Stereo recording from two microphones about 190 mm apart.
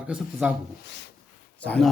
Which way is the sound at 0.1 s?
5° right (ahead or behind).